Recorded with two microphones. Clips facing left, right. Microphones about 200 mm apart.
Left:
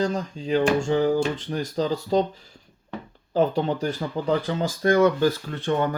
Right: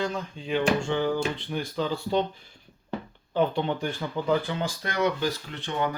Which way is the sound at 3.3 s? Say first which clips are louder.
Left 3 dB; 40° left (ahead or behind).